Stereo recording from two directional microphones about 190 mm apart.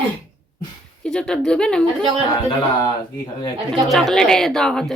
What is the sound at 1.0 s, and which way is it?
A woman's voice, 5° left (ahead or behind).